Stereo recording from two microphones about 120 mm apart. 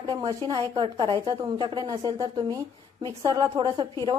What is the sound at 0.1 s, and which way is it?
Speech, 30° right (ahead or behind).